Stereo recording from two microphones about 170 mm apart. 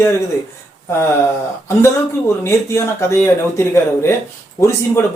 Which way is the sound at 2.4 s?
15° left (ahead or behind).